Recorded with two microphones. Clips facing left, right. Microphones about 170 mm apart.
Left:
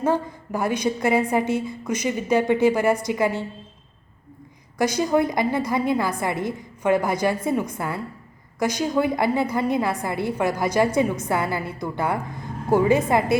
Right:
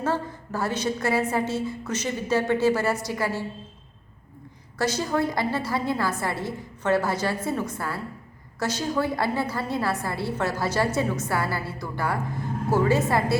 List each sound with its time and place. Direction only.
0.0 s a woman's voice: 15° left (ahead or behind)
4.8 s a woman's voice: 15° left (ahead or behind)